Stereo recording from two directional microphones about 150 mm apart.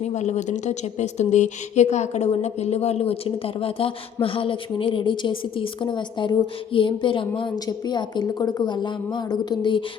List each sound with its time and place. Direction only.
0.0 s a woman's voice: 50° left (ahead or behind); by 9.8 s 30° left (ahead or behind)